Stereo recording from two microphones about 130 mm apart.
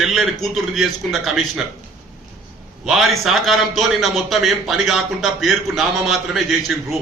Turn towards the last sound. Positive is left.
turn(degrees=0)  # may be behind; listen again after turning